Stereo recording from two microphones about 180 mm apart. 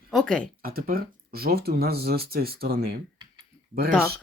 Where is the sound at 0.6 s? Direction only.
55° right (ahead or behind).